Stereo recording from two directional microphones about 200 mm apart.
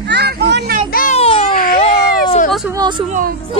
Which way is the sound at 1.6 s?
45° left (ahead or behind).